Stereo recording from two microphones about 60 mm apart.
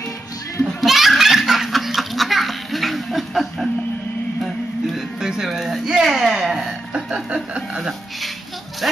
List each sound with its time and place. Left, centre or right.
0.7 s laughter: centre
4.9 s music: centre
6.9 s chuckle: centre
7.7 s music: centre